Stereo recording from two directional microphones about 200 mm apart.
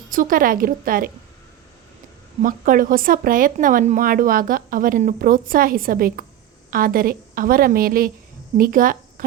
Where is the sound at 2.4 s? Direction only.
45° right (ahead or behind).